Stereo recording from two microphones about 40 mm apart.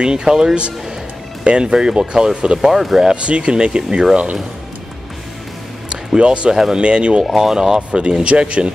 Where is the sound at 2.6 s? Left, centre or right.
Centre.